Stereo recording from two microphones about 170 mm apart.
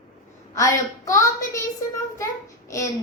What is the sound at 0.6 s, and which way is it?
A woman's voice, 20° left (ahead or behind).